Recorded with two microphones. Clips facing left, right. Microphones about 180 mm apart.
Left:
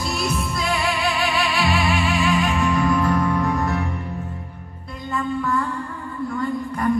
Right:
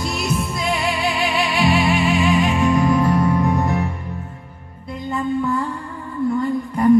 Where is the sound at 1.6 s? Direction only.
20° right (ahead or behind).